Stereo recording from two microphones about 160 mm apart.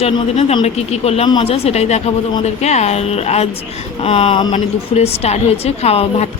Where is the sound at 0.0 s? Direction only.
40° left (ahead or behind).